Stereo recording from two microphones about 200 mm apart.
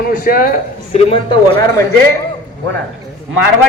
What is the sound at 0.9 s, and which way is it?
Speech, 30° left (ahead or behind).